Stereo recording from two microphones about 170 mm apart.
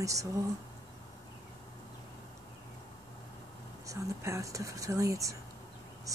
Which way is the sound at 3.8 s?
20° right (ahead or behind).